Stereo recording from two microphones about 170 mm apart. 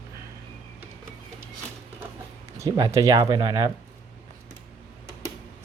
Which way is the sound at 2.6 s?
20° right (ahead or behind).